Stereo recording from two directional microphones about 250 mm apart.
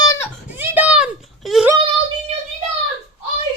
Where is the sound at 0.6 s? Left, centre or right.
Centre.